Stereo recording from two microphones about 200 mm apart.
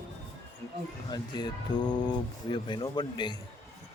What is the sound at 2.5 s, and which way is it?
Speech, 25° left (ahead or behind).